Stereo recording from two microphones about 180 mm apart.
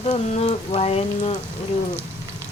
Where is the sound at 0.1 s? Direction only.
35° left (ahead or behind).